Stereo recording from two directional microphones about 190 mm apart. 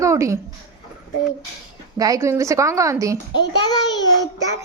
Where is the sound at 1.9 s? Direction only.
20° right (ahead or behind).